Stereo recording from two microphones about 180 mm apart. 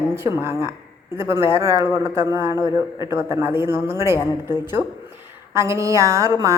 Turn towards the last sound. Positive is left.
turn(degrees=-20)  # may be behind; listen again after turning